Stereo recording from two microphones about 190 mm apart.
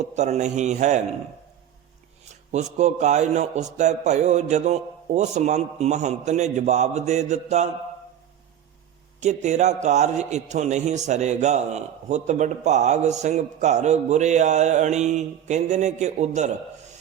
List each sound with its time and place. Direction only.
0.0 s a man's voice: 35° right (ahead or behind)
2.5 s a man's voice: 35° right (ahead or behind)
9.2 s a man's voice: 35° right (ahead or behind)